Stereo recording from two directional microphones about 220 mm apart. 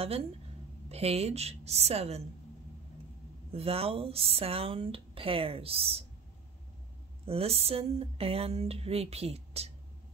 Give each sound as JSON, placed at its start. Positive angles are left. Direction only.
{"t": 0.0, "sound": "speech", "side_deg": -25}
{"t": 3.5, "sound": "speech", "side_deg": -25}
{"t": 7.2, "sound": "speech", "side_deg": -25}